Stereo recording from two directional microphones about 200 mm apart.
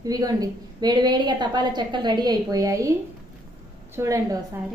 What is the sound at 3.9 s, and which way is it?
Speech, 15° right (ahead or behind).